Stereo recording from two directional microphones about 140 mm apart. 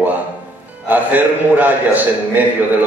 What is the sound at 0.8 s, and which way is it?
A man's voice, 10° right (ahead or behind).